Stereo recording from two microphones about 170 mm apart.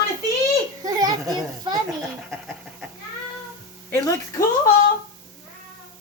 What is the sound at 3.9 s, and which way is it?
Speech, 15° left (ahead or behind).